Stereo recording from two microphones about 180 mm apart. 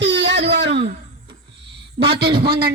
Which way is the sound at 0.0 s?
70° right (ahead or behind).